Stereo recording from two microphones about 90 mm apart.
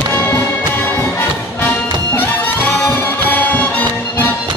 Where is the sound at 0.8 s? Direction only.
25° left (ahead or behind).